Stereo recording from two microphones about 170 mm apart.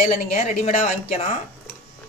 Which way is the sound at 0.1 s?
40° left (ahead or behind).